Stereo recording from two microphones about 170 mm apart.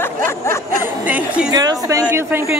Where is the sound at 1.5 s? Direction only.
20° right (ahead or behind).